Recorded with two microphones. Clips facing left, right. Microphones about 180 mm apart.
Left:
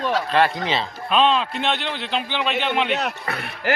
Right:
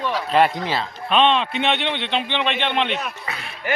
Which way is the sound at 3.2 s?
60° left (ahead or behind).